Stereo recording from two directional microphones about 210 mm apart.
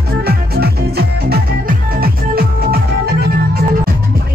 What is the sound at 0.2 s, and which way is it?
Music, 45° right (ahead or behind).